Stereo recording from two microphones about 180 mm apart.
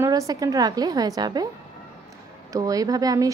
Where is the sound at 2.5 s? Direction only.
20° right (ahead or behind).